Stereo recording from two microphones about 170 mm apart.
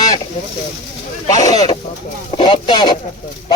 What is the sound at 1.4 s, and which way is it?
Speech, 20° left (ahead or behind).